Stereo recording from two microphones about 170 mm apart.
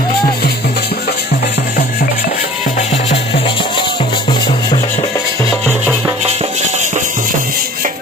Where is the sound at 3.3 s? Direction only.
30° left (ahead or behind).